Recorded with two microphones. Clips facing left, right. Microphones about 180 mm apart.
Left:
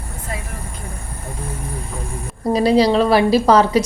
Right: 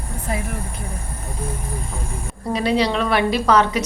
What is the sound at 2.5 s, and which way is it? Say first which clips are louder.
A woman's voice: left 6 dB; 35° left (ahead or behind).